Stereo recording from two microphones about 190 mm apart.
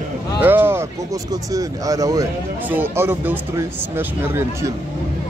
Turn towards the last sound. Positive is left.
turn(degrees=-15)  # may be behind; listen again after turning